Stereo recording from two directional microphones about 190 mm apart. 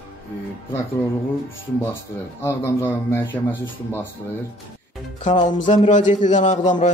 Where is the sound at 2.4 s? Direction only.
10° left (ahead or behind).